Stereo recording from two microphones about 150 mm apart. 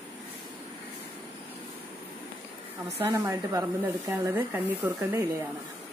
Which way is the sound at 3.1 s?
20° right (ahead or behind).